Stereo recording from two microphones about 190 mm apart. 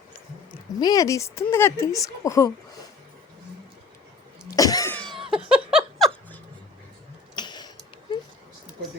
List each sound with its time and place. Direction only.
0.8 s a woman's voice: 20° left (ahead or behind)
4.5 s cough: 20° left (ahead or behind)
5.3 s laughter: 5° right (ahead or behind)
7.3 s a sound: 25° left (ahead or behind)